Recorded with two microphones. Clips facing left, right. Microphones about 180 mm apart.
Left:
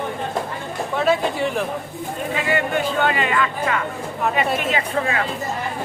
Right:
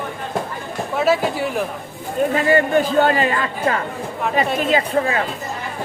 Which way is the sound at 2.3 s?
45° right (ahead or behind).